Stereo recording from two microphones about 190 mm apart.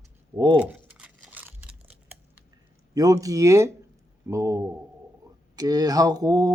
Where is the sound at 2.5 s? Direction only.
20° right (ahead or behind).